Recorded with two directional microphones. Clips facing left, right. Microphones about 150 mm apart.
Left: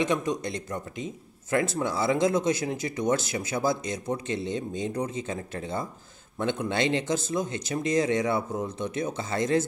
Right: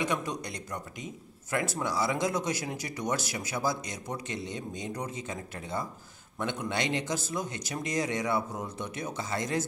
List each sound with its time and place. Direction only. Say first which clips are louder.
0.0 s speech: left 5 dB; 20° left (ahead or behind)